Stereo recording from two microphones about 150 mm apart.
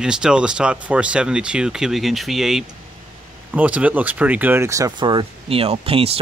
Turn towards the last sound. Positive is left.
turn(degrees=-40)  # may be behind; listen again after turning